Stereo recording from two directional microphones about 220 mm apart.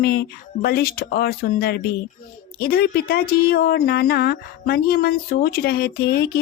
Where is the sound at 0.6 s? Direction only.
45° left (ahead or behind).